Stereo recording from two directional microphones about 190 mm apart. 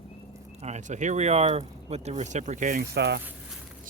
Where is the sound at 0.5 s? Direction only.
35° right (ahead or behind).